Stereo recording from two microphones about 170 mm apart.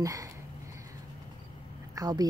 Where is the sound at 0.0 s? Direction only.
20° right (ahead or behind).